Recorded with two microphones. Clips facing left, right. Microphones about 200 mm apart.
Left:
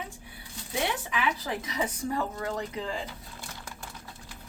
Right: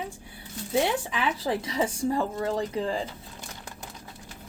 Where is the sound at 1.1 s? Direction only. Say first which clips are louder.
Right 3 dB; 30° right (ahead or behind).